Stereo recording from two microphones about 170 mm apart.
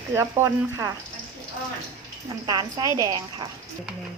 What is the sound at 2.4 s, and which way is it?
A woman's voice, 25° right (ahead or behind).